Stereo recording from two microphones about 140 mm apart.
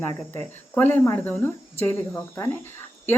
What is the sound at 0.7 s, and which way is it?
Speech, 15° left (ahead or behind).